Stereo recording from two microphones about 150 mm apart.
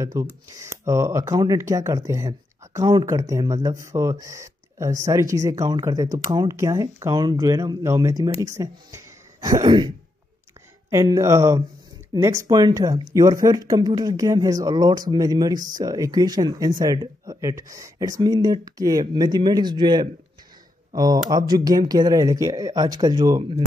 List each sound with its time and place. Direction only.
0.0 s speech: 20° right (ahead or behind)